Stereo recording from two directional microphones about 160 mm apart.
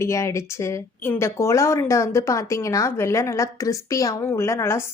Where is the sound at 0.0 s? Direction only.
20° left (ahead or behind).